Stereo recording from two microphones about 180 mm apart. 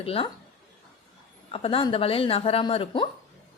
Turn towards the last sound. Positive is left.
turn(degrees=30)  # may be behind; listen again after turning